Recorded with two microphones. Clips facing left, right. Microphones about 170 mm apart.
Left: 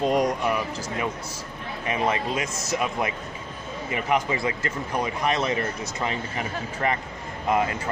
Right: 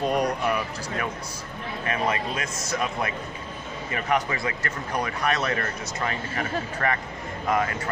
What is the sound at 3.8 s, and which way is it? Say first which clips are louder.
Speech: left 1 dB; 15° left (ahead or behind).